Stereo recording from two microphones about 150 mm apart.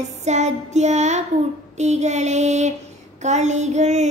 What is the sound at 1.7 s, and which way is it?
Child singing, 50° right (ahead or behind).